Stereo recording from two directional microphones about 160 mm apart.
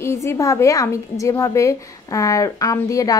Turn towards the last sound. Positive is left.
turn(degrees=20)  # may be behind; listen again after turning